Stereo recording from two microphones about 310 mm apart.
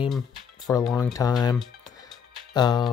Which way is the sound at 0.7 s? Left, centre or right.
Centre.